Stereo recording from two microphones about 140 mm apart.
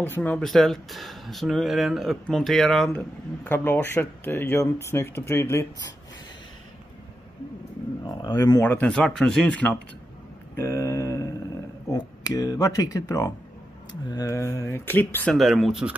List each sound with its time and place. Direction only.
0.0 s speech: 10° left (ahead or behind)
3.4 s speech: 15° left (ahead or behind)
8.0 s speech: 30° left (ahead or behind)
8.6 s speech: 10° left (ahead or behind)
10.6 s speech: 20° left (ahead or behind)
15.3 s speech: centre (ahead or behind)